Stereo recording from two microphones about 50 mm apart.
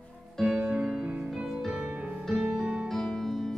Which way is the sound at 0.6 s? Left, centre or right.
Centre.